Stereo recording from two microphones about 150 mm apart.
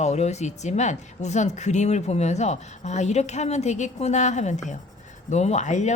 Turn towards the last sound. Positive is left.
turn(degrees=50)  # may be behind; listen again after turning